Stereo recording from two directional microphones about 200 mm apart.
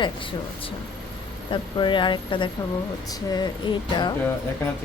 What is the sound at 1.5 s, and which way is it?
A woman's voice, 25° left (ahead or behind).